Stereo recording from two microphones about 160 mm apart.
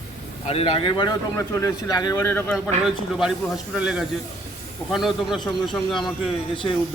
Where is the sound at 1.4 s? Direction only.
20° left (ahead or behind).